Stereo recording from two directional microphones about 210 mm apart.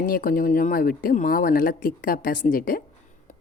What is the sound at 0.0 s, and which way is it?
A woman's voice, 40° left (ahead or behind).